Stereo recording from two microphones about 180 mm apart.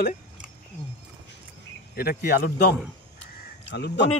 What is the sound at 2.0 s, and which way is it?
Speech, 55° left (ahead or behind).